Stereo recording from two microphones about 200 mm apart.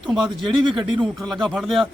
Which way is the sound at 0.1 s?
Centre (ahead or behind).